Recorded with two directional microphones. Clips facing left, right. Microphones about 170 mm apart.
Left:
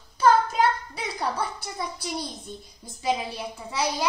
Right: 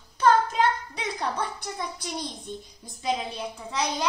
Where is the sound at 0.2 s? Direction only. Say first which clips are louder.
Left 1 dB; 5° left (ahead or behind).